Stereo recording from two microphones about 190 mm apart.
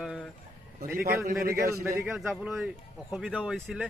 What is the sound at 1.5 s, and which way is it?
Speech, 15° right (ahead or behind).